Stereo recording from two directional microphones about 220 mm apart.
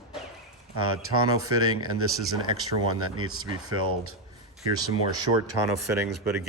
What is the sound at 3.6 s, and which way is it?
Speech, 90° right.